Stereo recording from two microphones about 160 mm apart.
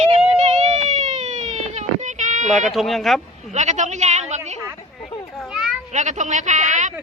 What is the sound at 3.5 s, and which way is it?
A woman's voice, 45° right (ahead or behind).